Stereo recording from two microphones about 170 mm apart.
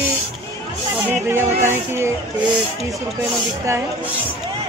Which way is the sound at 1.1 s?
15° right (ahead or behind).